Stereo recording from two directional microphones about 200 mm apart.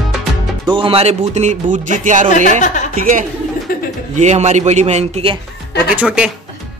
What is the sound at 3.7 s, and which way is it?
Bird, 45° left (ahead or behind).